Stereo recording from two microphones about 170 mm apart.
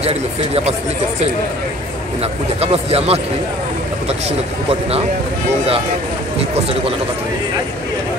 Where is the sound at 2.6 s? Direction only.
35° right (ahead or behind).